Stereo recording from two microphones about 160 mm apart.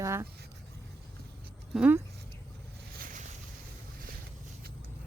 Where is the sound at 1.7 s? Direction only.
10° right (ahead or behind).